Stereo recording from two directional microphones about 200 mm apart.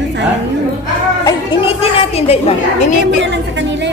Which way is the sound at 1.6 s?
30° left (ahead or behind).